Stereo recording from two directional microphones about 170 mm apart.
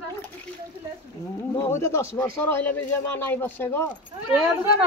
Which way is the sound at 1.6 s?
15° left (ahead or behind).